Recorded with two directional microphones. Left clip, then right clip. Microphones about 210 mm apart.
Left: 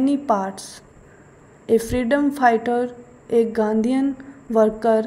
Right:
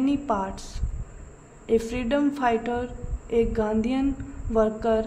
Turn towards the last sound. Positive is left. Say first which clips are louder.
# left 6 dB
turn(degrees=20)  # may be behind; listen again after turning